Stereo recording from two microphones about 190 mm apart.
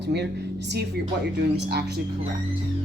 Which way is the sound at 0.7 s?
60° right (ahead or behind).